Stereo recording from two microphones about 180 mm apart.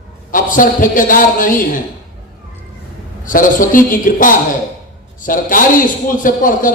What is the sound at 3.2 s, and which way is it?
A man's voice, 50° left (ahead or behind).